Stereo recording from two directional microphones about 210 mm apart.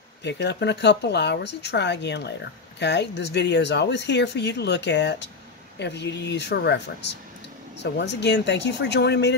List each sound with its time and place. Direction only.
0.2 s speech: 55° left (ahead or behind)